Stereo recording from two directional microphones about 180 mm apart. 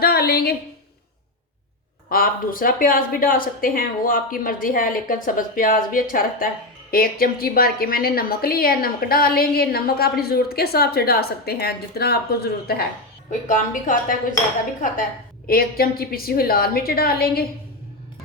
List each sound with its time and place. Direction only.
0.0 s a sound: 60° left (ahead or behind)
2.0 s a woman's voice: 55° left (ahead or behind)
13.5 s speech: 45° left (ahead or behind)
15.4 s a woman's voice: 55° left (ahead or behind)